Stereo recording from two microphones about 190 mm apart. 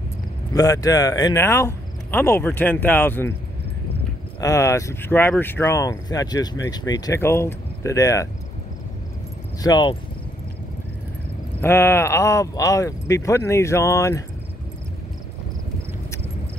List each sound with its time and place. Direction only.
0.5 s speech: 20° left (ahead or behind)
4.4 s speech: 15° left (ahead or behind)
9.6 s speech: 20° left (ahead or behind)
11.6 s speech: 15° left (ahead or behind)